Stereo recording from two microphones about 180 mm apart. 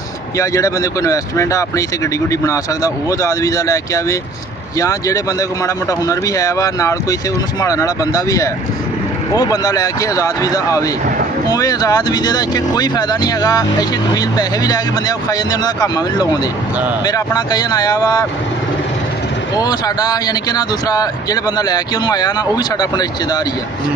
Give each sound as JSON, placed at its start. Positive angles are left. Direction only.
{"t": 0.4, "sound": "speech", "side_deg": 20}
{"t": 19.6, "sound": "speech", "side_deg": 20}